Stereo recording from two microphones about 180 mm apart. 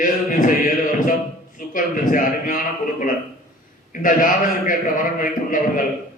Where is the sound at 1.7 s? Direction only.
50° left (ahead or behind).